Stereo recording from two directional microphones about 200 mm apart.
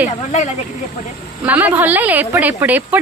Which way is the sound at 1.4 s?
10° right (ahead or behind).